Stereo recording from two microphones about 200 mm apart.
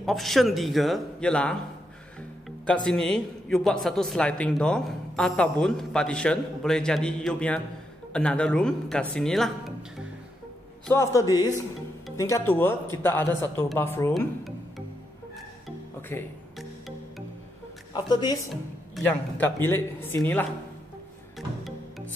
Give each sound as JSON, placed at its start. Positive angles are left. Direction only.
{"t": 0.0, "sound": "a man's voice", "side_deg": 0}
{"t": 2.6, "sound": "a man's voice", "side_deg": 5}
{"t": 10.9, "sound": "speech", "side_deg": 15}
{"t": 17.9, "sound": "a woman's voice", "side_deg": 20}
{"t": 18.5, "sound": "speech", "side_deg": 5}
{"t": 21.4, "sound": "music", "side_deg": 0}